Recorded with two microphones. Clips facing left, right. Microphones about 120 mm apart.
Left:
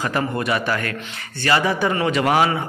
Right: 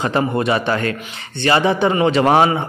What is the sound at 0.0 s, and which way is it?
A man's voice, 25° right (ahead or behind).